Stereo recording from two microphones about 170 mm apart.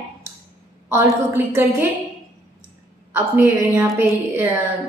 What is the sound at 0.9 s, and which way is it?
Speech, 15° right (ahead or behind).